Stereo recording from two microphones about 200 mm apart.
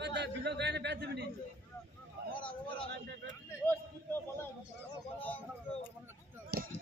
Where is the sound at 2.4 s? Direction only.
25° left (ahead or behind).